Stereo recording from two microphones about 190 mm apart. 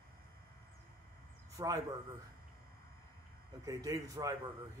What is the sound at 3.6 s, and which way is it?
Speech, 20° right (ahead or behind).